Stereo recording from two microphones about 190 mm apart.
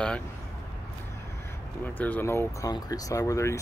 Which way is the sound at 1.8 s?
10° left (ahead or behind).